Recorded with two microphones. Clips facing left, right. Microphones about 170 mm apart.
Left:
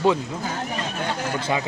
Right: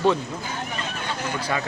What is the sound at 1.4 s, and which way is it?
Speech, 20° left (ahead or behind).